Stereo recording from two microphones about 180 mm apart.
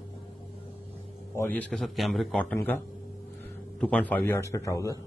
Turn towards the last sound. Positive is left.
turn(degrees=15)  # may be behind; listen again after turning